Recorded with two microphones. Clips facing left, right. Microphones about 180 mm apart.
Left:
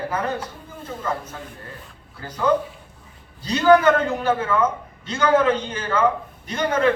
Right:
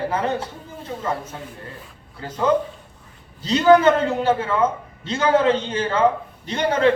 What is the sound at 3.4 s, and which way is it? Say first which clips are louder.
A man's voice: right 1 dB; 25° right (ahead or behind).